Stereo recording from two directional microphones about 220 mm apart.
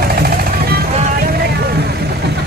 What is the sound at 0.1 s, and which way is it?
Jackhammer, 45° right (ahead or behind).